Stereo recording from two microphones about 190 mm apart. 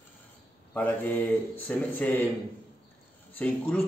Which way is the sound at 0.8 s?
10° left (ahead or behind).